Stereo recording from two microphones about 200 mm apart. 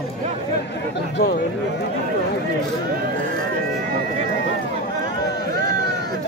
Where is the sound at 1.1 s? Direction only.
55° left (ahead or behind).